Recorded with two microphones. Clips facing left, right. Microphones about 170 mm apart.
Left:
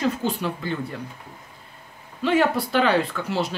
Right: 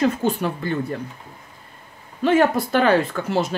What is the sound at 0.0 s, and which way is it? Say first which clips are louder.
Speech: right 4 dB; 50° right (ahead or behind).